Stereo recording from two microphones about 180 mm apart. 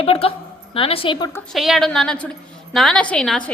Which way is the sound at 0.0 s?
35° left (ahead or behind).